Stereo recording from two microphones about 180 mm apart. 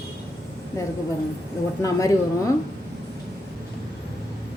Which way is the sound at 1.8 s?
20° left (ahead or behind).